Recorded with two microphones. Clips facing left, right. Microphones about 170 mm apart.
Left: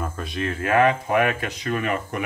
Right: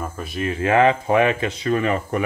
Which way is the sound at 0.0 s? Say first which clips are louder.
Right 1 dB; 5° right (ahead or behind).